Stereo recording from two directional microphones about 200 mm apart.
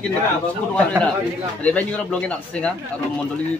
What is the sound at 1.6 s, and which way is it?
Speech, 5° left (ahead or behind).